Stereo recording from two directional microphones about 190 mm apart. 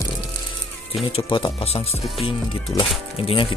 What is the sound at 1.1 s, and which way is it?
Speech, 25° left (ahead or behind).